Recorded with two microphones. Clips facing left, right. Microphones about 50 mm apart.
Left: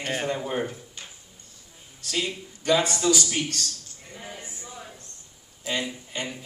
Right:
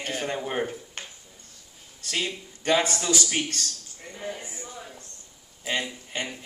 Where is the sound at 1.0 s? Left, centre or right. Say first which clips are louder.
Right 3 dB; right.